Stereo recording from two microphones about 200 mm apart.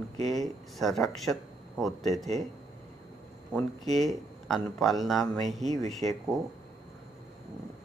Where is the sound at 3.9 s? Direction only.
Centre (ahead or behind).